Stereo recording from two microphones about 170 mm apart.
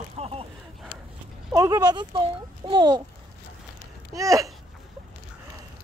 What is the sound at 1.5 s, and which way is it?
A child's voice, 20° right (ahead or behind).